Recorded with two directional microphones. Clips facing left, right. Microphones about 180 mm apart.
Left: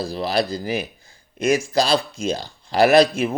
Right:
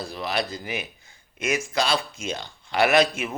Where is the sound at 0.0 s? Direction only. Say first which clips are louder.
Left 6 dB; 35° left (ahead or behind).